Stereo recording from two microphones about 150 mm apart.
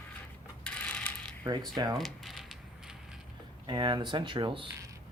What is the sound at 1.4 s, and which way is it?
Speech, 30° right (ahead or behind).